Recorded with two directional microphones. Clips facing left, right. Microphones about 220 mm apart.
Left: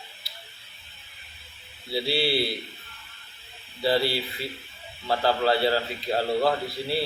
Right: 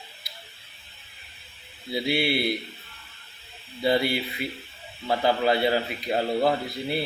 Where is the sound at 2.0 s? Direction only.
20° right (ahead or behind).